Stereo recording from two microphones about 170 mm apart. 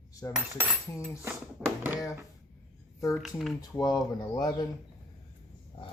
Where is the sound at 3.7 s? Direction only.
20° left (ahead or behind).